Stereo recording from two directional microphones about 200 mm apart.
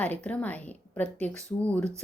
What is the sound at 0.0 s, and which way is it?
A woman's voice, 5° left (ahead or behind).